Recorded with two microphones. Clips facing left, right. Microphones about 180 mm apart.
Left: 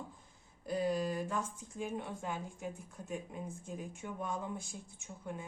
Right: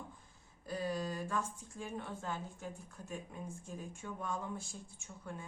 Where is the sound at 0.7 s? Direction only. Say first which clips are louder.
Left 4 dB; 20° left (ahead or behind).